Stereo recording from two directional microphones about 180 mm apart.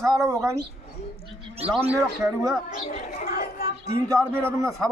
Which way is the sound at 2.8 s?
40° left (ahead or behind).